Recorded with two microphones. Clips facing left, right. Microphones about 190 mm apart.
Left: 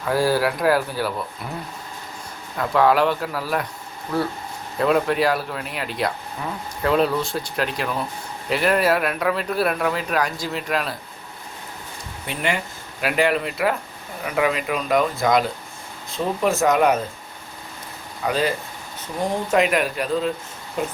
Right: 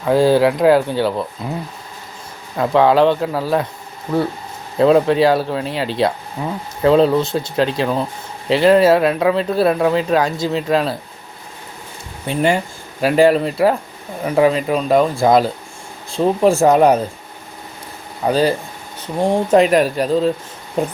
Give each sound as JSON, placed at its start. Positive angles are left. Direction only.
{"t": 0.0, "sound": "speech", "side_deg": -20}
{"t": 2.6, "sound": "speech", "side_deg": -25}
{"t": 4.8, "sound": "speech", "side_deg": -25}
{"t": 12.2, "sound": "speech", "side_deg": -35}
{"t": 18.3, "sound": "speech", "side_deg": -35}